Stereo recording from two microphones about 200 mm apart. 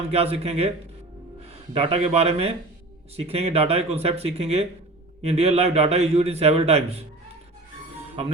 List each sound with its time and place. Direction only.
0.1 s a man's voice: 30° right (ahead or behind)
1.7 s a man's voice: 30° right (ahead or behind)